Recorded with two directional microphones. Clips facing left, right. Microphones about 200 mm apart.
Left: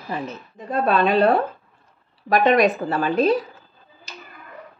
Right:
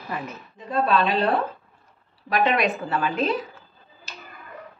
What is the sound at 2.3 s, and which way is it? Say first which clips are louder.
Speech: left 5 dB; 40° left (ahead or behind).